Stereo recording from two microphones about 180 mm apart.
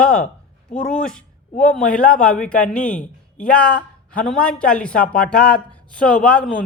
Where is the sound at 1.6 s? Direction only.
5° left (ahead or behind).